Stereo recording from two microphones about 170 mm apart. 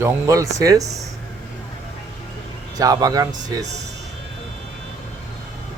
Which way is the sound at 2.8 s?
20° right (ahead or behind).